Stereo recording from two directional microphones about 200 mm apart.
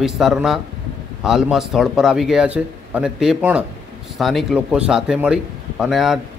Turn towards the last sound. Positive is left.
turn(degrees=0)  # may be behind; listen again after turning